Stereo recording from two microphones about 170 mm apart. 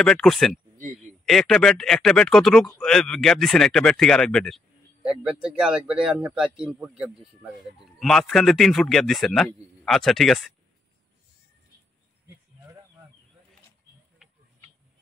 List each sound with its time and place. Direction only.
0.0 s speech: 5° left (ahead or behind)